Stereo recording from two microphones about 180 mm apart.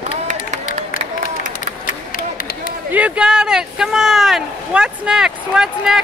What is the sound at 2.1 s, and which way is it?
Run, 50° left (ahead or behind).